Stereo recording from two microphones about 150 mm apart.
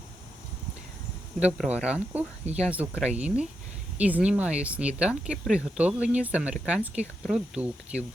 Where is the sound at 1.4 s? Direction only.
10° right (ahead or behind).